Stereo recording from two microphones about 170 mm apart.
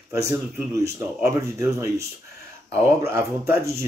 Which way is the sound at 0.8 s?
15° right (ahead or behind).